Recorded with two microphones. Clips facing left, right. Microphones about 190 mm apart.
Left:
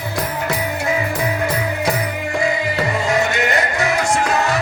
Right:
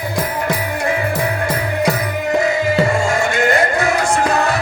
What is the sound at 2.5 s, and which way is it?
Music, 45° right (ahead or behind).